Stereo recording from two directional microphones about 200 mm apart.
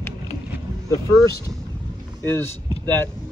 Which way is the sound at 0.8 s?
15° left (ahead or behind).